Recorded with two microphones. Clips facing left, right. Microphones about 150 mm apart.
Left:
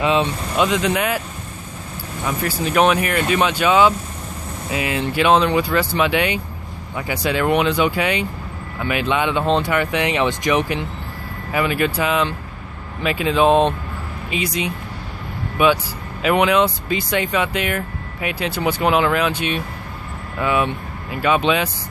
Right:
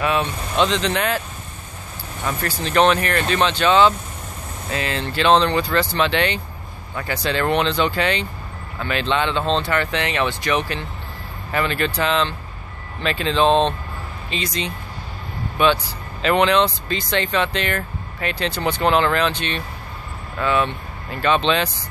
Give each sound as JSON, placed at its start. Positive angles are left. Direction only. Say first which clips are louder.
{"t": 0.0, "sound": "speech", "louder": "left 3 dB", "side_deg": 20}
{"t": 0.6, "sound": "speech", "louder": "left 1 dB", "side_deg": 10}
{"t": 2.2, "sound": "speech", "louder": "left 3 dB", "side_deg": 10}